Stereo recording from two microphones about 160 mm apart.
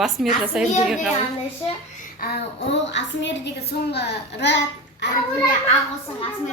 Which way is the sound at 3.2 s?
90° left.